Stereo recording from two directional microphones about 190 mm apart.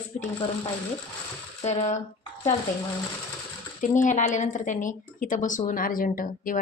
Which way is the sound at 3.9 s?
40° left (ahead or behind).